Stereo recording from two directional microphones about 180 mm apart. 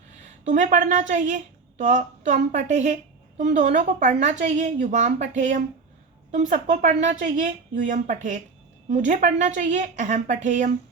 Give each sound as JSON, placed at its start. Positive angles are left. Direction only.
{"t": 0.4, "sound": "a woman's voice", "side_deg": -45}